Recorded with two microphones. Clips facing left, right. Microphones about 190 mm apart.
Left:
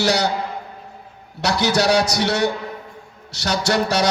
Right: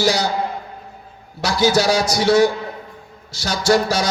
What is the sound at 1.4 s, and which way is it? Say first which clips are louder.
A man's voice: right 2 dB; 70° left (ahead or behind).